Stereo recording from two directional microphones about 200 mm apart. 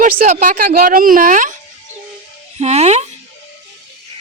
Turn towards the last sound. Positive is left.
turn(degrees=-35)  # may be behind; listen again after turning